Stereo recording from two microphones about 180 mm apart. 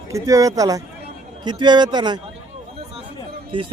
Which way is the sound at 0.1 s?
20° right (ahead or behind).